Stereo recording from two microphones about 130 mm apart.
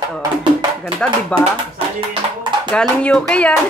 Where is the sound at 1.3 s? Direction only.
10° left (ahead or behind).